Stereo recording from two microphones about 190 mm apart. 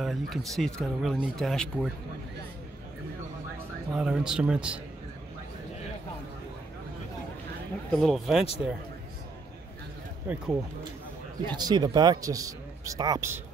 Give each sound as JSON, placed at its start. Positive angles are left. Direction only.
{"t": 0.0, "sound": "speech", "side_deg": 0}
{"t": 3.9, "sound": "speech", "side_deg": -5}
{"t": 7.9, "sound": "speech", "side_deg": 0}
{"t": 10.2, "sound": "speech", "side_deg": -10}
{"t": 11.4, "sound": "speech", "side_deg": -20}